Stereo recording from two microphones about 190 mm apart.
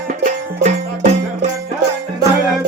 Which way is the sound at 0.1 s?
40° right (ahead or behind).